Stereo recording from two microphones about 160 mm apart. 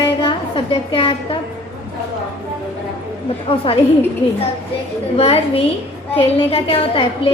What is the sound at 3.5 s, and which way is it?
Speech, 35° left (ahead or behind).